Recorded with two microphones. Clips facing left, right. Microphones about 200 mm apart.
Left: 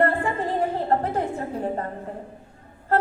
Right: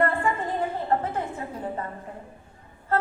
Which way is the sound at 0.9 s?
40° left (ahead or behind).